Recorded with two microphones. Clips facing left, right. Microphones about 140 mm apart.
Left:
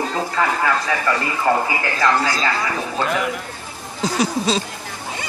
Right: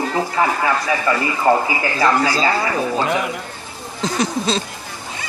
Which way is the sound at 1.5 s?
20° right (ahead or behind).